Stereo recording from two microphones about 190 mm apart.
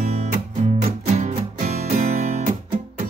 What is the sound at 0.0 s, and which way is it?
Music, 40° right (ahead or behind).